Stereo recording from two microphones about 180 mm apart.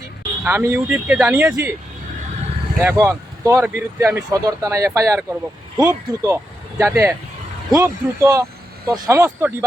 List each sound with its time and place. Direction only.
0.4 s speech: 15° right (ahead or behind)
2.8 s speech: 15° right (ahead or behind)